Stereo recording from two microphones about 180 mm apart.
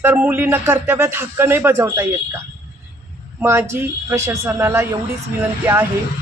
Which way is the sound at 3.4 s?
15° right (ahead or behind).